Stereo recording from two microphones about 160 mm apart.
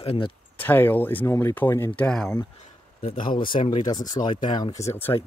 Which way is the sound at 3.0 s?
35° left (ahead or behind).